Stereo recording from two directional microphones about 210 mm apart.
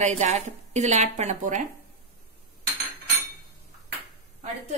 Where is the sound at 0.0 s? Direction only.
30° right (ahead or behind).